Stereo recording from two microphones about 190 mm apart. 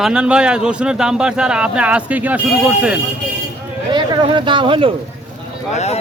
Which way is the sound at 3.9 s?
25° right (ahead or behind).